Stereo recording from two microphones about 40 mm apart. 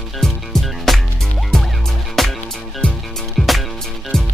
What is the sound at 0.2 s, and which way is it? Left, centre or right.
Music, centre.